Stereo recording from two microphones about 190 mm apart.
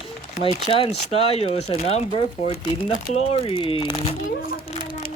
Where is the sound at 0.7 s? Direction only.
30° left (ahead or behind).